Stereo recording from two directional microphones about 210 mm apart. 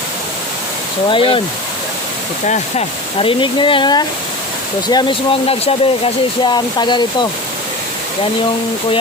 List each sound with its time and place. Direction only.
1.0 s speech: 25° left (ahead or behind)
2.5 s speech: 30° left (ahead or behind)